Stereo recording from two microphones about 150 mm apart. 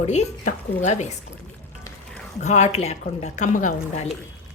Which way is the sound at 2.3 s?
50° left (ahead or behind).